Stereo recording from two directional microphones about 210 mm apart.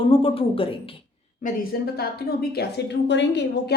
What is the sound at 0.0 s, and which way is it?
Speech, 25° left (ahead or behind).